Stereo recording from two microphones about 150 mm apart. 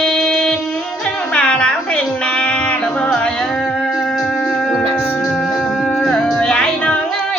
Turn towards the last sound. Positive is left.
turn(degrees=5)  # may be behind; listen again after turning